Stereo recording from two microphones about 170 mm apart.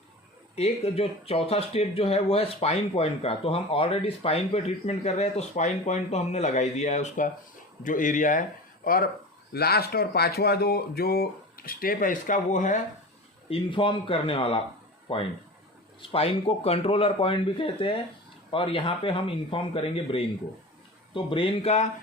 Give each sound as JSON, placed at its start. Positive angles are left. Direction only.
{"t": 0.5, "sound": "speech", "side_deg": 35}
{"t": 9.5, "sound": "speech", "side_deg": 65}
{"t": 13.5, "sound": "speech", "side_deg": 30}